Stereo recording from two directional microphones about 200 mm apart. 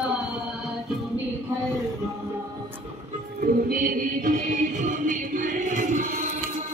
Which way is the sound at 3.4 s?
45° right (ahead or behind).